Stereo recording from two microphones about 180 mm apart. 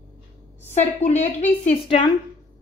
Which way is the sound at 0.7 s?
40° left (ahead or behind).